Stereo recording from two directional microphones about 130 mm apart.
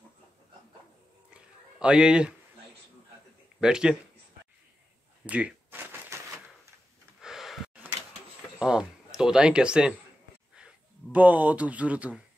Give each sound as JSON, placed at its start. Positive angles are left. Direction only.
{"t": 1.8, "sound": "a man's voice", "side_deg": -5}
{"t": 3.6, "sound": "speech", "side_deg": -5}
{"t": 5.2, "sound": "shuffling cards", "side_deg": -10}
{"t": 7.2, "sound": "gasp", "side_deg": -5}
{"t": 8.5, "sound": "speech", "side_deg": -5}